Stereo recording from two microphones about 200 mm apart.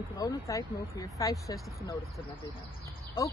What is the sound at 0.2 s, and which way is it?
Speech, 15° left (ahead or behind).